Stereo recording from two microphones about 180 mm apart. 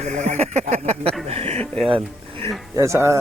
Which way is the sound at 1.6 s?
5° left (ahead or behind).